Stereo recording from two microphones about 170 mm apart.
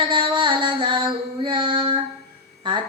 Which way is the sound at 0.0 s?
30° right (ahead or behind).